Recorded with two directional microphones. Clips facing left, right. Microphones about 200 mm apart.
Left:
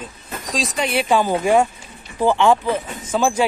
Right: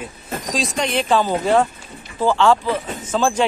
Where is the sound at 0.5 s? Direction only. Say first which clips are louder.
Even; centre (ahead or behind).